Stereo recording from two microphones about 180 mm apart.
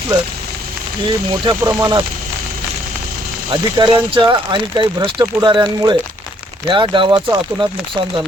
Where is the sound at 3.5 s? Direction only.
25° right (ahead or behind).